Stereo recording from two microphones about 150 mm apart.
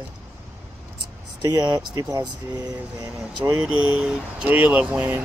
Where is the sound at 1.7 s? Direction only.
30° right (ahead or behind).